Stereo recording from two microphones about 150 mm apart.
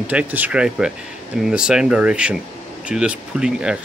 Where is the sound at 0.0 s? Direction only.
10° right (ahead or behind).